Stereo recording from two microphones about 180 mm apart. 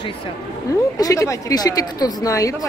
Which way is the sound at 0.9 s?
20° left (ahead or behind).